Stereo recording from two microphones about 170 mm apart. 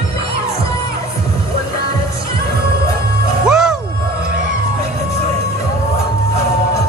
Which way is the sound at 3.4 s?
5° right (ahead or behind).